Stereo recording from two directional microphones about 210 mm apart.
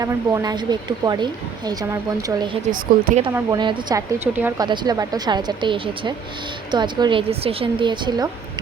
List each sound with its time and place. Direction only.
0.0 s a woman's voice: 15° right (ahead or behind)
2.7 s speech: 40° right (ahead or behind)
3.3 s a woman's voice: 20° right (ahead or behind)
4.6 s a woman's voice: 20° right (ahead or behind)